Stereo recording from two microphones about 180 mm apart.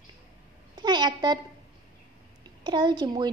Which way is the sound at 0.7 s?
25° right (ahead or behind).